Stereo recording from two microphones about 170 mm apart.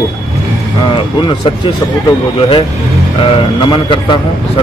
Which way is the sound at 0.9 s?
30° left (ahead or behind).